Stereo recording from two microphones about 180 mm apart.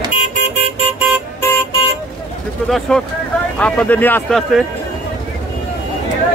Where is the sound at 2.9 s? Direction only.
5° left (ahead or behind).